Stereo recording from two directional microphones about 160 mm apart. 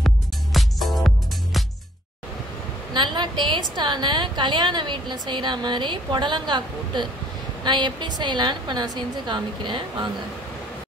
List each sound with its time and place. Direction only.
0.0 s music: centre (ahead or behind)
2.9 s a woman's voice: 30° right (ahead or behind)